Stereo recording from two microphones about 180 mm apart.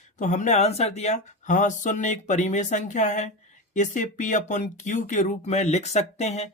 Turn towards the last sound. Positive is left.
turn(degrees=35)  # may be behind; listen again after turning